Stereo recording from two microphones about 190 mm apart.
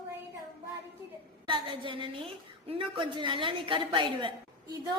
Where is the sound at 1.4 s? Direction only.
25° right (ahead or behind).